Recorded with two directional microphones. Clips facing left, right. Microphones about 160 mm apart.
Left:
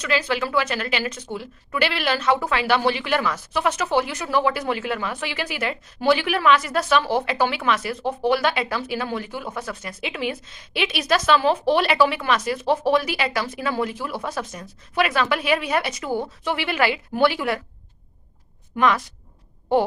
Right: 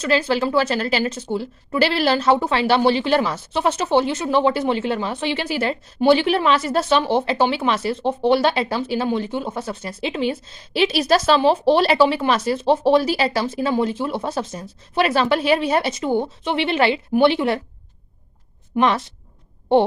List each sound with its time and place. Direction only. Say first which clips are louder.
0.0 s a woman's voice: right 4 dB; 30° right (ahead or behind)
18.8 s a woman's voice: right 2 dB; 30° right (ahead or behind)